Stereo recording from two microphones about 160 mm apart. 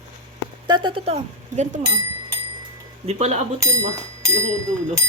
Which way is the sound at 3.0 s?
45° right (ahead or behind).